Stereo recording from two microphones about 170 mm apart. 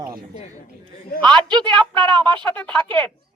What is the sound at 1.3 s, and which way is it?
A woman's voice, 25° right (ahead or behind).